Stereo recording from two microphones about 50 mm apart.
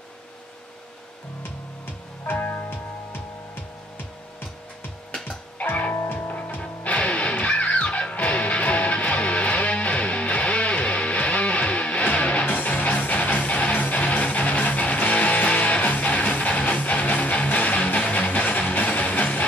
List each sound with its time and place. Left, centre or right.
2.2 s music: left
5.6 s music: left
12.4 s music: left